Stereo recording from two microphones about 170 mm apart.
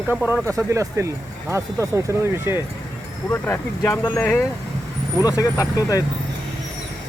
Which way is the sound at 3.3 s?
15° left (ahead or behind).